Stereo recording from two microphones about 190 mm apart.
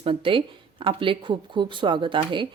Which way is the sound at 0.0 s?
30° right (ahead or behind).